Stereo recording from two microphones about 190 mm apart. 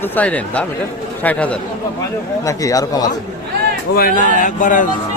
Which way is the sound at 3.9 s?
45° left (ahead or behind).